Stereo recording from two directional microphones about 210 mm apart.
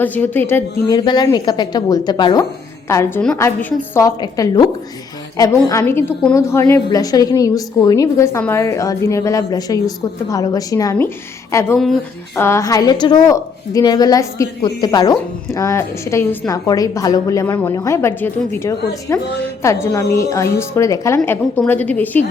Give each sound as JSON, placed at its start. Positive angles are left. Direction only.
{"t": 0.0, "sound": "a woman's voice", "side_deg": 10}